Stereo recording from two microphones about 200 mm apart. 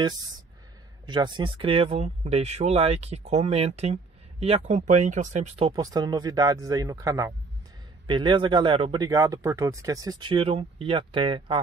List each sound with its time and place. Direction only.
1.0 s speech: 20° right (ahead or behind); by 5.7 s 35° right (ahead or behind)
5.7 s speech: 20° right (ahead or behind)